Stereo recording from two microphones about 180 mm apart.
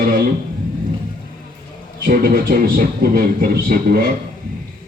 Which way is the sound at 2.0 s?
55° right (ahead or behind).